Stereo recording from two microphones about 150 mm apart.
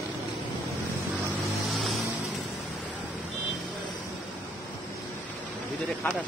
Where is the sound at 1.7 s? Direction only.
Centre (ahead or behind).